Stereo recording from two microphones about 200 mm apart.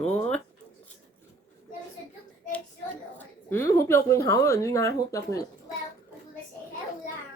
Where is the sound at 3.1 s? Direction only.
10° left (ahead or behind).